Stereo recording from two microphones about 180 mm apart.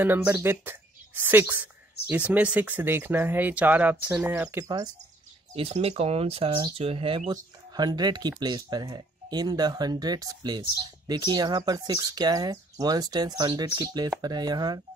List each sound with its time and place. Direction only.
0.0 s a woman's voice: 10° right (ahead or behind)
5.5 s speech: 35° right (ahead or behind)